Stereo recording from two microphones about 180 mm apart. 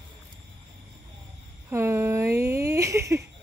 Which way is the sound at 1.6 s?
15° right (ahead or behind).